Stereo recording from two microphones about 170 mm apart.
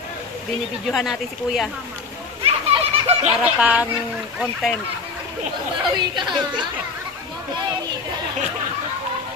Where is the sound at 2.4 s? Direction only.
35° right (ahead or behind).